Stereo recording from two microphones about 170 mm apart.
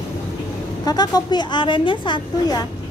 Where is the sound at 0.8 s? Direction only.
25° left (ahead or behind).